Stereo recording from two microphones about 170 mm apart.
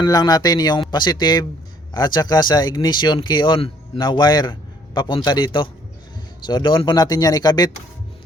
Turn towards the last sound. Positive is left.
turn(degrees=25)  # may be behind; listen again after turning